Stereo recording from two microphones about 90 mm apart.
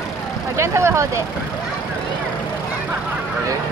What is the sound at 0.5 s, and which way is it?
Speech, 30° right (ahead or behind).